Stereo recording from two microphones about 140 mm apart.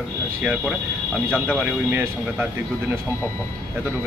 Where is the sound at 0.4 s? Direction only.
5° right (ahead or behind).